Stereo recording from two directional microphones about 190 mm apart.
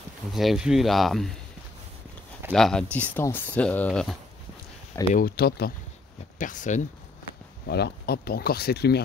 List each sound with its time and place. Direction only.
0.3 s speech: centre (ahead or behind)
2.5 s speech: 5° left (ahead or behind)
5.1 s speech: 50° left (ahead or behind)
6.3 s speech: 45° left (ahead or behind)
7.6 s speech: 60° left (ahead or behind)